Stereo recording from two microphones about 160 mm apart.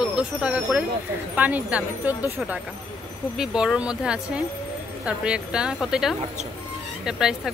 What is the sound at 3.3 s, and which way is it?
Speech, 5° right (ahead or behind).